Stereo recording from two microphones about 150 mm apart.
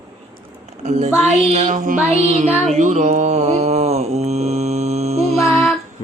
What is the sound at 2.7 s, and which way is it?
Mantra, 50° right (ahead or behind).